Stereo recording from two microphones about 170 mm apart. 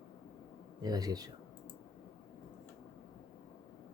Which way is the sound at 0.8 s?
25° right (ahead or behind).